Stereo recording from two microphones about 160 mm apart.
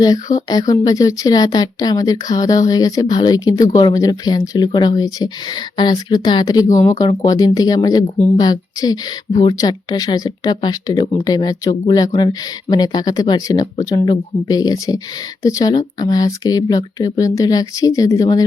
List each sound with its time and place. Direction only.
0.0 s speech: 25° left (ahead or behind)